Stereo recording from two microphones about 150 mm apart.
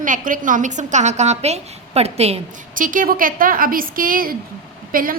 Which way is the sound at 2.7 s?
65° right (ahead or behind).